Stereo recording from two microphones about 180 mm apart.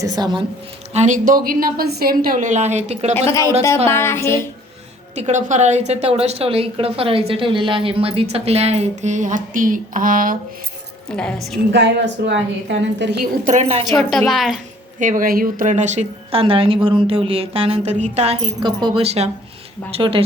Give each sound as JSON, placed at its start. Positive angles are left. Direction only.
{"t": 0.0, "sound": "a woman's voice", "side_deg": -20}
{"t": 0.9, "sound": "a woman's voice", "side_deg": -45}
{"t": 3.2, "sound": "a sound", "side_deg": 15}
{"t": 5.1, "sound": "a woman's voice", "side_deg": -40}
{"t": 11.2, "sound": "a woman's voice", "side_deg": 5}
{"t": 11.7, "sound": "a woman's voice", "side_deg": -75}
{"t": 13.5, "sound": "a woman's voice", "side_deg": -40}
{"t": 14.1, "sound": "a woman's voice", "side_deg": 0}
{"t": 14.9, "sound": "a woman's voice", "side_deg": -45}